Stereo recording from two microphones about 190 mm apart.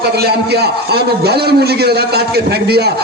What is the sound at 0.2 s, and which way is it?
A man's voice, 60° right (ahead or behind).